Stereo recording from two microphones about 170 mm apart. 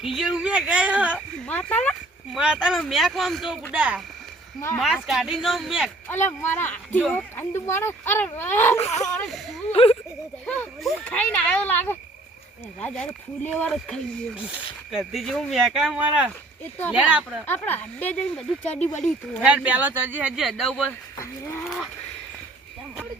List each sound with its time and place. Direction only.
0.0 s speech: centre (ahead or behind)
1.5 s speech: 10° left (ahead or behind)
6.1 s speech: 10° left (ahead or behind)
9.1 s speech: centre (ahead or behind)
9.7 s speech: 35° left (ahead or behind)
10.4 s speech: 10° left (ahead or behind)
13.7 s speech: 5° right (ahead or behind)
17.4 s speech: 10° left (ahead or behind)
19.4 s speech: 5° right (ahead or behind)
21.2 s speech: 15° left (ahead or behind)